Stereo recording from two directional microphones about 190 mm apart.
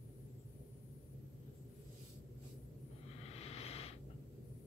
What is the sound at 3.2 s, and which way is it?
Vehicle, 35° left (ahead or behind).